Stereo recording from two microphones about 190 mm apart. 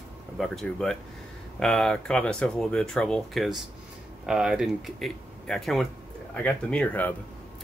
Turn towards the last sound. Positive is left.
turn(degrees=5)  # may be behind; listen again after turning